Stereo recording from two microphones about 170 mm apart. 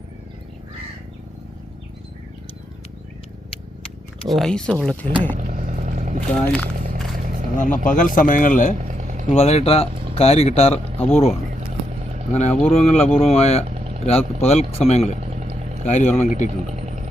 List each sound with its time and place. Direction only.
4.3 s speech: centre (ahead or behind)
5.4 s vehicle: 50° right (ahead or behind)
6.3 s speech: 5° left (ahead or behind)
7.5 s speech: 50° left (ahead or behind)
8.8 s a sound: 45° right (ahead or behind)
9.3 s speech: 40° left (ahead or behind)
13.7 s vehicle: 40° right (ahead or behind)
14.0 s speech: 35° left (ahead or behind)
15.2 s a sound: 40° right (ahead or behind)
15.8 s speech: 40° left (ahead or behind)
16.6 s a sound: 40° right (ahead or behind)